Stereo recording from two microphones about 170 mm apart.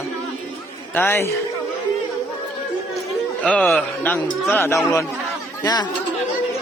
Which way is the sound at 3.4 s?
5° left (ahead or behind).